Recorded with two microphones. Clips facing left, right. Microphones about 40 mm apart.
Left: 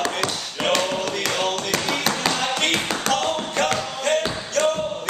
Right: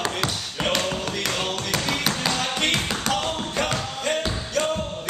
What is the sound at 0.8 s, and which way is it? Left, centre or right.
Tap, centre.